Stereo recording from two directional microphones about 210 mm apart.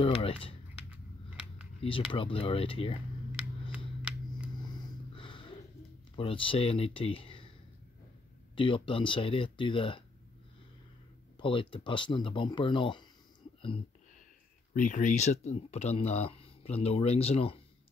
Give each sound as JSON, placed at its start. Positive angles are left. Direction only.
{"t": 0.0, "sound": "speech", "side_deg": 25}
{"t": 1.8, "sound": "speech", "side_deg": 25}
{"t": 4.6, "sound": "a sound", "side_deg": 20}
{"t": 6.1, "sound": "speech", "side_deg": 25}
{"t": 8.5, "sound": "speech", "side_deg": 25}
{"t": 11.3, "sound": "speech", "side_deg": 25}
{"t": 14.7, "sound": "speech", "side_deg": 40}